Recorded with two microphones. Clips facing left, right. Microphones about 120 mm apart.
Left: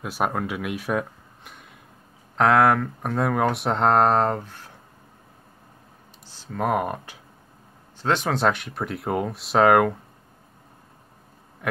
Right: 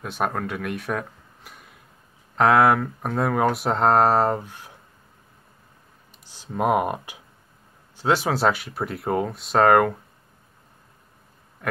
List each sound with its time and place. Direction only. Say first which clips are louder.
0.0 s speech: left 1 dB; 5° left (ahead or behind); by 4.7 s 15° right (ahead or behind)
6.2 s speech: right 3 dB; 15° right (ahead or behind)